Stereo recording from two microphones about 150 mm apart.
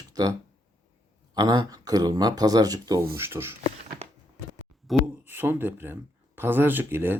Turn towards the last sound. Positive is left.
turn(degrees=-15)  # may be behind; listen again after turning